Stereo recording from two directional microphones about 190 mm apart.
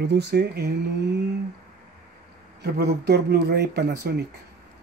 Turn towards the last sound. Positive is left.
turn(degrees=-55)  # may be behind; listen again after turning